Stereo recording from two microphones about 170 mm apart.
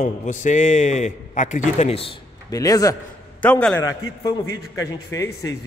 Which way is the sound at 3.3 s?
5° left (ahead or behind).